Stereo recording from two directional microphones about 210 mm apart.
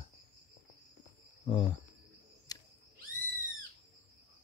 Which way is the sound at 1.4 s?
30° left (ahead or behind).